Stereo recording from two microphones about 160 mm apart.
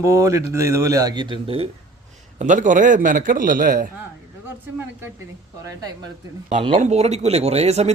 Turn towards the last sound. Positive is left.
turn(degrees=-40)  # may be behind; listen again after turning